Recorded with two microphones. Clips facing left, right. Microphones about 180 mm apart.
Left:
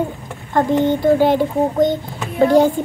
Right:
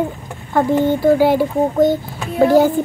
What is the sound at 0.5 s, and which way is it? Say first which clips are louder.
A child's voice: right 1 dB; 10° right (ahead or behind).